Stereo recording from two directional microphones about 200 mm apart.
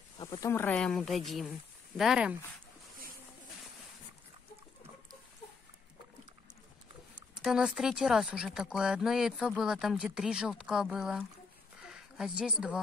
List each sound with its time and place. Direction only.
0.2 s speech: 20° left (ahead or behind); by 2.3 s 5° right (ahead or behind)
7.4 s speech: 5° right (ahead or behind)